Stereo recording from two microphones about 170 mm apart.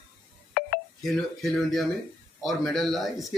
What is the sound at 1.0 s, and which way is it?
Speech, centre (ahead or behind).